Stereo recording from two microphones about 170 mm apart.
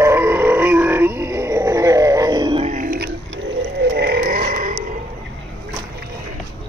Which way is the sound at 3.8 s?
70° right (ahead or behind).